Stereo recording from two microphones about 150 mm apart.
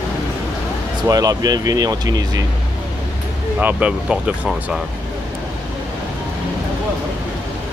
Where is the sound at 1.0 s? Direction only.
25° right (ahead or behind).